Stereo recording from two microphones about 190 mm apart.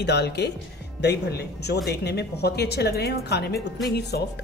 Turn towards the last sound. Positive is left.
turn(degrees=60)  # may be behind; listen again after turning